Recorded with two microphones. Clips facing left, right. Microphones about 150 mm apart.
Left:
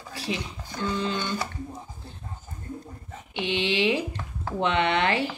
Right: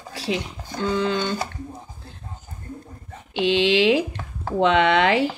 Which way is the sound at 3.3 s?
90° right.